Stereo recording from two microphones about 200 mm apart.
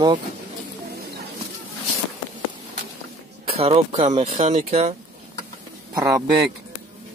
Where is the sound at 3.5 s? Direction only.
30° right (ahead or behind).